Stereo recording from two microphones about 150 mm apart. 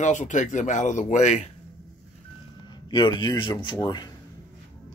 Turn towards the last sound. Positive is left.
turn(degrees=30)  # may be behind; listen again after turning